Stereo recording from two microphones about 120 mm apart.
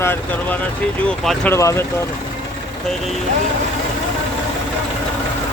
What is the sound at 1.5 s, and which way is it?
Speech, 25° left (ahead or behind).